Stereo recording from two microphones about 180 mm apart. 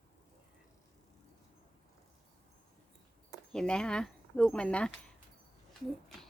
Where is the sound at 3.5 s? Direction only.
5° left (ahead or behind).